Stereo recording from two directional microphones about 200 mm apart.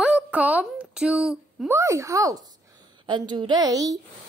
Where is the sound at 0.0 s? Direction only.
5° right (ahead or behind).